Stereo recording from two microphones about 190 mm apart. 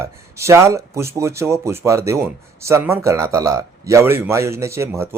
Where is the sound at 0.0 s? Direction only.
15° right (ahead or behind).